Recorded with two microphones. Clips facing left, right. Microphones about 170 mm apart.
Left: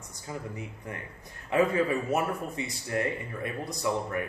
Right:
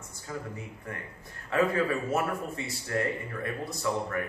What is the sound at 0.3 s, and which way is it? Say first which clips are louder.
Speech: even; 15° left (ahead or behind).